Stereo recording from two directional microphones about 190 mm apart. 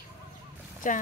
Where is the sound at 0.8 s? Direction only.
45° left (ahead or behind).